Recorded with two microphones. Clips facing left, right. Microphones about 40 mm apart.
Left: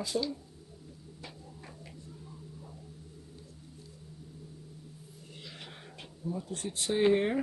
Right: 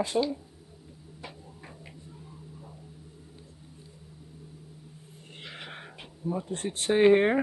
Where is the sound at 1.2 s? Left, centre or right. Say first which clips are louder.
Right 4 dB; right.